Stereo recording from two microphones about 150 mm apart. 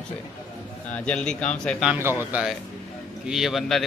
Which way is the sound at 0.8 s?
10° left (ahead or behind).